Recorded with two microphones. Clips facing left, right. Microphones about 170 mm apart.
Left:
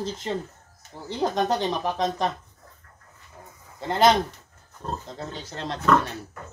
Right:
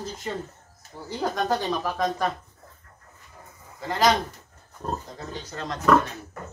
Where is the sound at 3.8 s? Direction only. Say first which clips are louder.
Left 2 dB; 25° left (ahead or behind).